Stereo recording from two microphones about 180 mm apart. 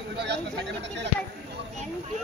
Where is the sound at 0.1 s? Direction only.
70° right (ahead or behind).